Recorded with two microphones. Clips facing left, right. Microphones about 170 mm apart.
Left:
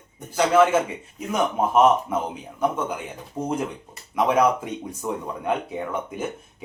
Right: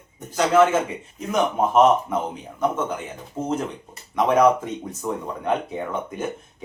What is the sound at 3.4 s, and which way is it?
Speech, 25° right (ahead or behind).